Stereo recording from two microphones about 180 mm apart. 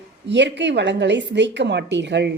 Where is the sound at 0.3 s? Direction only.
75° right (ahead or behind).